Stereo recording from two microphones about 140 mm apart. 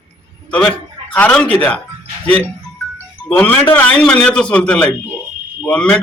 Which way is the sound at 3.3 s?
10° left (ahead or behind).